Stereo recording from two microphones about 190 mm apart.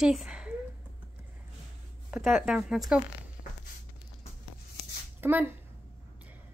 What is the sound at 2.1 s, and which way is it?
Speech, centre (ahead or behind).